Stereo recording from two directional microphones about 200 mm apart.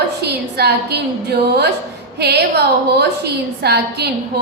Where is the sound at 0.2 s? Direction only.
55° right (ahead or behind).